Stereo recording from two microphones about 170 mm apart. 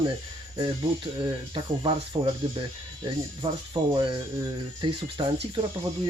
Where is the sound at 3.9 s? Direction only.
30° right (ahead or behind).